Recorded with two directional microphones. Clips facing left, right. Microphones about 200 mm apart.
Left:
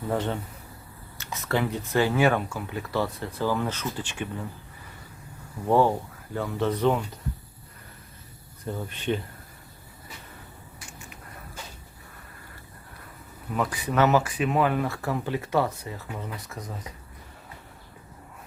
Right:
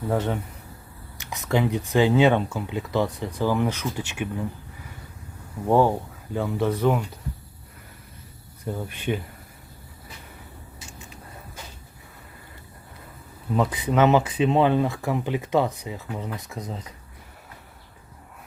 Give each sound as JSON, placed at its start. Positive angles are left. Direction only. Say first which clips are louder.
{"t": 0.1, "sound": "speech", "louder": "right 2 dB", "side_deg": -10}
{"t": 5.6, "sound": "speech", "louder": "right 2 dB", "side_deg": -10}
{"t": 8.6, "sound": "speech", "louder": "right 1 dB", "side_deg": -10}
{"t": 10.8, "sound": "vehicle", "louder": "right 1 dB", "side_deg": -25}
{"t": 13.6, "sound": "speech", "louder": "right 3 dB", "side_deg": -20}